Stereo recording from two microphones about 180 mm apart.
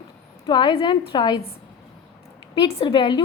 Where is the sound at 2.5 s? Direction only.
25° left (ahead or behind).